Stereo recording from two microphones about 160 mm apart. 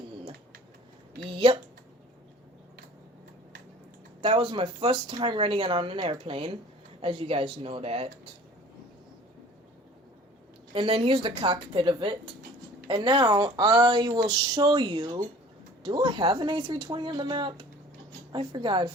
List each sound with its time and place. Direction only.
4.2 s speech: 30° right (ahead or behind)
10.8 s speech: 35° right (ahead or behind)